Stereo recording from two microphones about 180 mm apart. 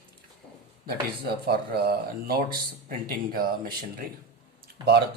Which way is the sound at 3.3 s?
55° right (ahead or behind).